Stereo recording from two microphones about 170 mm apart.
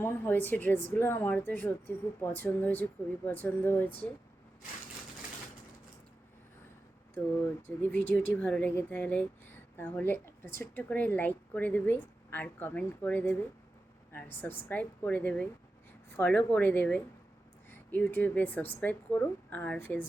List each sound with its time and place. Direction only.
0.0 s a woman's voice: 10° left (ahead or behind)
7.4 s a woman's voice: 10° left (ahead or behind)